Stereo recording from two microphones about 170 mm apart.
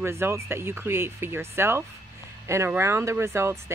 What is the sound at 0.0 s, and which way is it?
Speech, 15° right (ahead or behind).